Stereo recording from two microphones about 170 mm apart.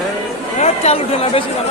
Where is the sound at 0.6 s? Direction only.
35° left (ahead or behind).